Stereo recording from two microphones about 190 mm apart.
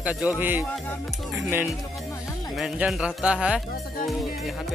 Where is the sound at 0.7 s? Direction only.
10° left (ahead or behind).